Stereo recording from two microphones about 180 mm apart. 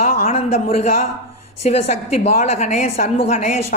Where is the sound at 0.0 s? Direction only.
40° left (ahead or behind).